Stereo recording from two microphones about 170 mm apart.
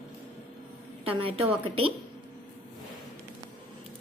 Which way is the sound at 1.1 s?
35° right (ahead or behind).